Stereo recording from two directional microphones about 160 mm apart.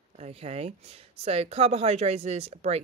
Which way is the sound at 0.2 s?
40° right (ahead or behind).